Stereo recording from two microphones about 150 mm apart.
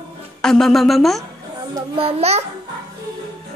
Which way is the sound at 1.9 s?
40° right (ahead or behind).